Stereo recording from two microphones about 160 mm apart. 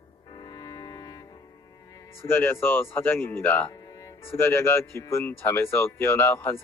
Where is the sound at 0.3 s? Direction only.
25° left (ahead or behind).